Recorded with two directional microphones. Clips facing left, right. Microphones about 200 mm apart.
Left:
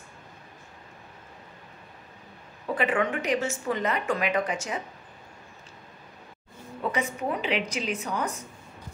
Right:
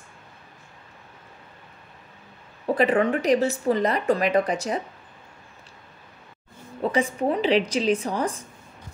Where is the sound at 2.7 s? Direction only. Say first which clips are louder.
Right 5 dB; 35° right (ahead or behind).